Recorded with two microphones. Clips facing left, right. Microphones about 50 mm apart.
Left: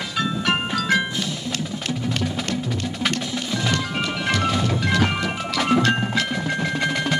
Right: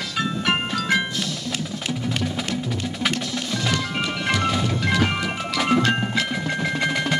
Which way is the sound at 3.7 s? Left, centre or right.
Centre.